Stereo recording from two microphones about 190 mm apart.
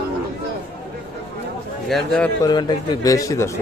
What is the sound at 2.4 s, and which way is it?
Speech, 20° left (ahead or behind).